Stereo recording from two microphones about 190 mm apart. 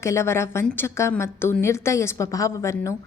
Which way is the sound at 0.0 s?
15° left (ahead or behind).